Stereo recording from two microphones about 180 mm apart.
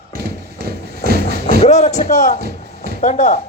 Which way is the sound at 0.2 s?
60° right (ahead or behind).